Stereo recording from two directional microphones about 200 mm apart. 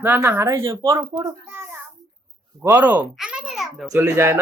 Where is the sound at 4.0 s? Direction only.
10° right (ahead or behind).